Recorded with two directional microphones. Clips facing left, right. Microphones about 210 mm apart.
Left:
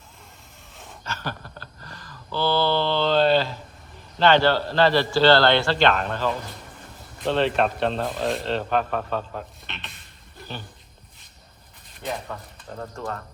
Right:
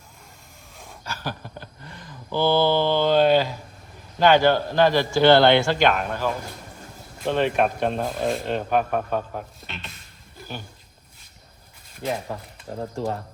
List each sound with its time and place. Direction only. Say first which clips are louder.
1.0 s a sound: right 1 dB; 10° right (ahead or behind)
4.2 s a man's voice: right 1 dB; 10° right (ahead or behind)
8.0 s speech: right 1 dB; centre (ahead or behind)
8.4 s a man's voice: right 1 dB; 10° right (ahead or behind)
12.3 s speech: right 3 dB; 25° right (ahead or behind)